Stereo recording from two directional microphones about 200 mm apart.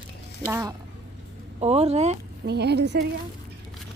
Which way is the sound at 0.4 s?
10° right (ahead or behind).